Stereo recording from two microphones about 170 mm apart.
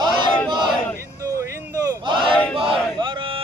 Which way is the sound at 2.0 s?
30° right (ahead or behind).